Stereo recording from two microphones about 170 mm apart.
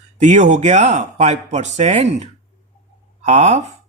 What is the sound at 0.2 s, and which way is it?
Speech, 45° right (ahead or behind).